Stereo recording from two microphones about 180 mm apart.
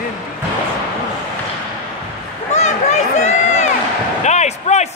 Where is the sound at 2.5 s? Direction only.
40° left (ahead or behind).